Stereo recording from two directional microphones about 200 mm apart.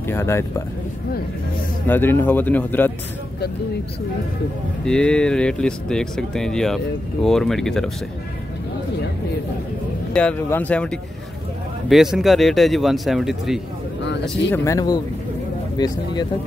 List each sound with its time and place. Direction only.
0.0 s speech: 10° left (ahead or behind)
1.9 s speech: 10° left (ahead or behind)
4.8 s speech: 5° left (ahead or behind)
10.1 s speech: 5° left (ahead or behind)
14.5 s speech: 15° left (ahead or behind)